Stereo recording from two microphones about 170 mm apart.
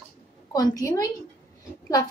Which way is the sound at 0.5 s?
20° left (ahead or behind).